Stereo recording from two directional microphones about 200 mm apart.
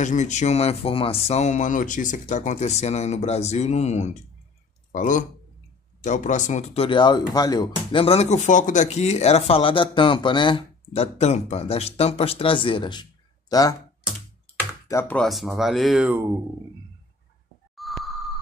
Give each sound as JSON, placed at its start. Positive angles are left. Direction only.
{"t": 0.0, "sound": "speech", "side_deg": 35}
{"t": 14.9, "sound": "speech", "side_deg": 10}
{"t": 17.7, "sound": "a sound", "side_deg": 0}